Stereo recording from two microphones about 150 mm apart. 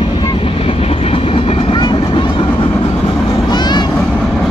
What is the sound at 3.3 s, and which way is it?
Vehicle, 30° left (ahead or behind).